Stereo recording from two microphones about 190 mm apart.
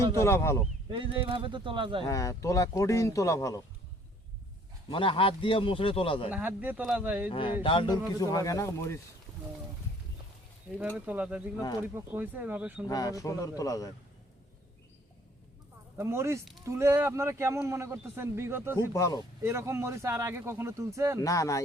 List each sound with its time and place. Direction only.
0.2 s speech: 15° left (ahead or behind)
0.9 s speech: 25° right (ahead or behind)
2.0 s speech: 15° left (ahead or behind)
4.9 s a man's voice: 25° left (ahead or behind)
6.3 s a man's voice: 10° right (ahead or behind)
7.3 s a man's voice: 25° left (ahead or behind)
10.9 s a man's voice: 10° right (ahead or behind)
12.9 s a man's voice: 20° left (ahead or behind)
16.0 s a man's voice: 15° right (ahead or behind)
18.9 s speech: 15° left (ahead or behind)
19.4 s a man's voice: 15° right (ahead or behind)
21.2 s speech: 15° left (ahead or behind)